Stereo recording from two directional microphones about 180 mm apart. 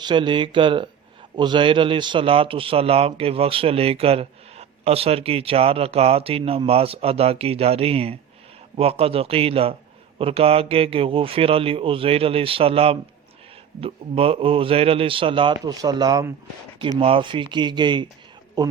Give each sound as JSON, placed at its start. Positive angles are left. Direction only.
{"t": 0.0, "sound": "a man's voice", "side_deg": -25}